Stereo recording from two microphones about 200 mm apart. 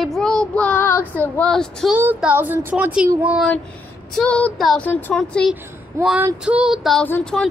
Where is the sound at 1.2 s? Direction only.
10° left (ahead or behind).